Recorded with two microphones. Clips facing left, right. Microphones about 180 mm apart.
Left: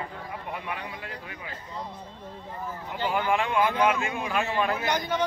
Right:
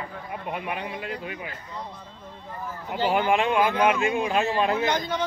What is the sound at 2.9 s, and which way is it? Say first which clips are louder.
A man's voice: right 4 dB; 30° right (ahead or behind).